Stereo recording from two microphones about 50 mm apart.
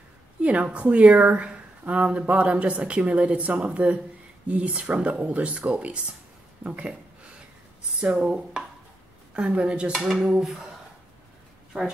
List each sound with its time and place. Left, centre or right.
0.4 s a woman's voice: right
8.0 s dishes: right
9.3 s speech: right
10.0 s dishes: centre